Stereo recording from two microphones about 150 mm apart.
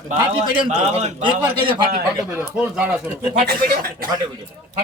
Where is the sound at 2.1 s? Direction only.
20° right (ahead or behind).